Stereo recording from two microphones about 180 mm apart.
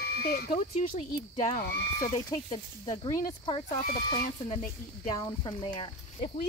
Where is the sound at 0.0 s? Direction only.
60° left (ahead or behind).